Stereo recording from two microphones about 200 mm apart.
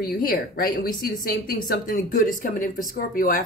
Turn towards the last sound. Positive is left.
turn(degrees=45)  # may be behind; listen again after turning